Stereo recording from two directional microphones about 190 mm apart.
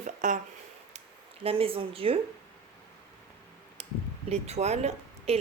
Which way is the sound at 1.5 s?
30° right (ahead or behind).